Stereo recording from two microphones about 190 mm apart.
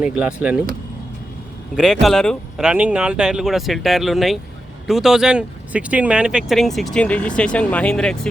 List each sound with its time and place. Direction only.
0.0 s speech: 5° right (ahead or behind)
1.7 s speech: centre (ahead or behind)